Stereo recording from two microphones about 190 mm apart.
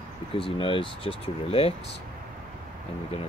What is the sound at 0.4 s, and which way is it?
Speech, 25° left (ahead or behind).